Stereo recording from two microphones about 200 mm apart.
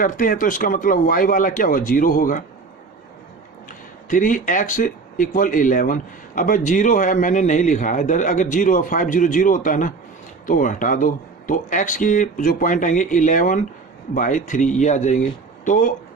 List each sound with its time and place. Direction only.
0.0 s speech: 45° left (ahead or behind)
4.1 s speech: 40° left (ahead or behind)